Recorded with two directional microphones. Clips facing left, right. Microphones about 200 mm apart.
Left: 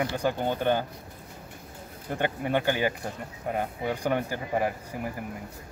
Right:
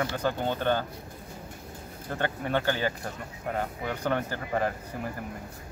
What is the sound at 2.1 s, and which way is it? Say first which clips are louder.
Speech: left 2 dB; 15° left (ahead or behind).